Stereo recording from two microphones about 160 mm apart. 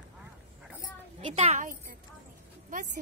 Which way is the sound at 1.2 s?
40° right (ahead or behind).